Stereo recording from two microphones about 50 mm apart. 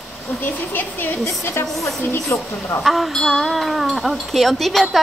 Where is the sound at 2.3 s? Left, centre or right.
Left.